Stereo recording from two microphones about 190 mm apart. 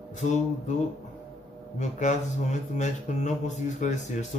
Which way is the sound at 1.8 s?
40° left (ahead or behind).